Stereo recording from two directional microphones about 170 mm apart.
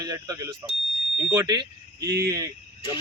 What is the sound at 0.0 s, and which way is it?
Speech, 20° right (ahead or behind).